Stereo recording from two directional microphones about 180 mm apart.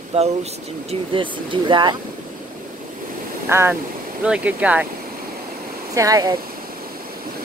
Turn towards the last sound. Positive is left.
turn(degrees=-20)  # may be behind; listen again after turning